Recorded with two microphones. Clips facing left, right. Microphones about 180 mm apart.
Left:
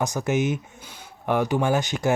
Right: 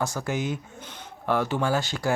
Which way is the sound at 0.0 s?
20° left (ahead or behind).